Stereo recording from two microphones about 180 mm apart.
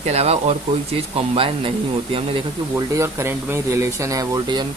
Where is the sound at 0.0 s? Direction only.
35° right (ahead or behind).